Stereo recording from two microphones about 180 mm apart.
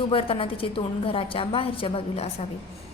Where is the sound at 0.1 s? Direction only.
30° left (ahead or behind).